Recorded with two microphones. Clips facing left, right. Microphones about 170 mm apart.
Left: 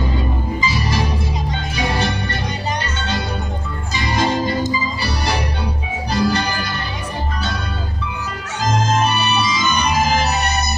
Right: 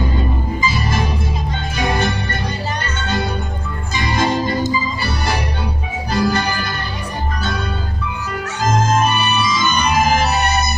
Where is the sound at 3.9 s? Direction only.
50° right (ahead or behind).